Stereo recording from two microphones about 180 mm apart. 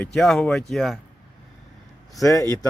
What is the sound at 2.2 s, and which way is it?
Speech, 15° left (ahead or behind).